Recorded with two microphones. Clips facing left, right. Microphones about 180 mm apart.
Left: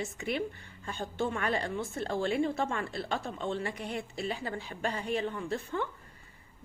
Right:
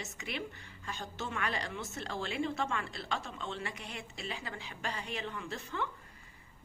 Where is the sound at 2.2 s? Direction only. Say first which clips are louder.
Left 5 dB; 45° left (ahead or behind).